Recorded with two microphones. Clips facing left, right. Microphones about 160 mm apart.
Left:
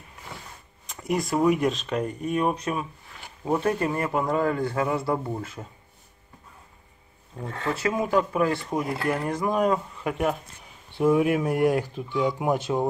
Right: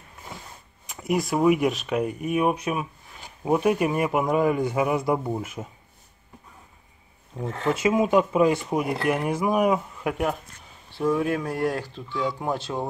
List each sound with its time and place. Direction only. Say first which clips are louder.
0.8 s speech: right 2 dB; 5° right (ahead or behind)
7.3 s speech: right 4 dB; 20° right (ahead or behind); by 10.3 s 5° right (ahead or behind)
11.0 s speech: left 3 dB; 10° left (ahead or behind)